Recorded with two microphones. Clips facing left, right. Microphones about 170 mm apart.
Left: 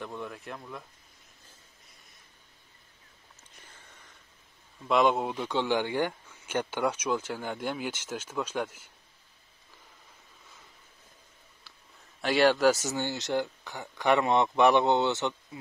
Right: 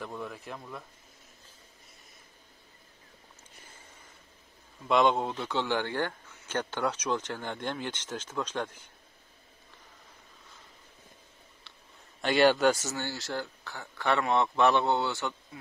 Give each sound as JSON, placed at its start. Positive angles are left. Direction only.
{"t": 0.0, "sound": "speech", "side_deg": 0}
{"t": 4.8, "sound": "speech", "side_deg": 0}
{"t": 11.7, "sound": "a sound", "side_deg": 0}
{"t": 12.2, "sound": "speech", "side_deg": 0}
{"t": 12.7, "sound": "speech", "side_deg": 15}